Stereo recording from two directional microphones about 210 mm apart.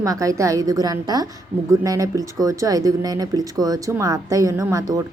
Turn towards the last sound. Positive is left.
turn(degrees=-15)  # may be behind; listen again after turning